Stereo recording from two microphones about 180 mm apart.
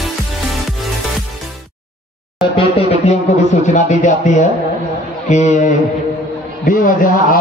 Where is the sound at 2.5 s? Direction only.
40° left (ahead or behind).